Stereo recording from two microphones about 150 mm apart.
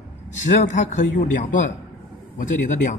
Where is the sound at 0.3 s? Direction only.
55° left (ahead or behind).